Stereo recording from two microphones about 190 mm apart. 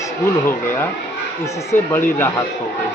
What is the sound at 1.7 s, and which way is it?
Speech, 10° left (ahead or behind).